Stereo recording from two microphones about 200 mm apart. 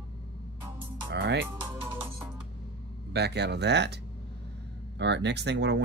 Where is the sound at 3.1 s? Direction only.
55° right (ahead or behind).